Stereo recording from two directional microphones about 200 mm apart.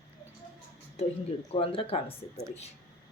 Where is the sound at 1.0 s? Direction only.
35° left (ahead or behind).